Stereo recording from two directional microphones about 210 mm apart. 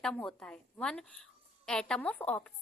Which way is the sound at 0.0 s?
5° left (ahead or behind).